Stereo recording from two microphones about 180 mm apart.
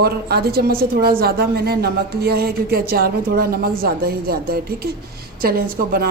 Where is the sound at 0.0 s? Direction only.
60° right (ahead or behind).